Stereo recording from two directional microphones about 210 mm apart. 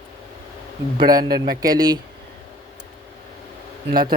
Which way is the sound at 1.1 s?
20° right (ahead or behind).